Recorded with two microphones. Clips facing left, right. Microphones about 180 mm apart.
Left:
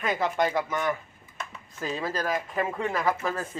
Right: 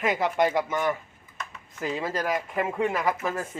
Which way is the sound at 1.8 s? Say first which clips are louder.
Right 1 dB; 20° right (ahead or behind).